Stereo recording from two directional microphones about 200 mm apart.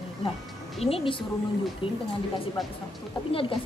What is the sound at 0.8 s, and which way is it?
Speech, 30° left (ahead or behind).